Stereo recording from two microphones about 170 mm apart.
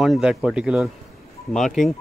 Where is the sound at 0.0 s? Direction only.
5° right (ahead or behind).